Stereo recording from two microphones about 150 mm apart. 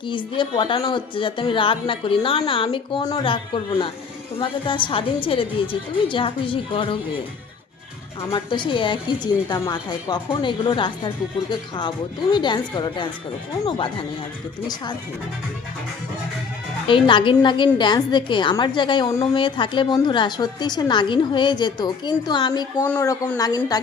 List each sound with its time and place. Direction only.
0.1 s a woman's voice: 35° left (ahead or behind)
8.3 s a woman's voice: 30° left (ahead or behind)
16.9 s a woman's voice: 35° left (ahead or behind)